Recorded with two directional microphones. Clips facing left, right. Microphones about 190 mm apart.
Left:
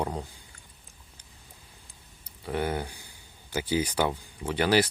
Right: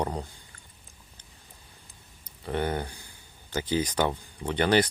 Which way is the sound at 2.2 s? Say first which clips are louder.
Right 1 dB; 5° left (ahead or behind).